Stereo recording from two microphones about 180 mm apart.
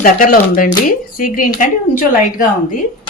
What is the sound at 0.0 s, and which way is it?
Speech, 50° left (ahead or behind).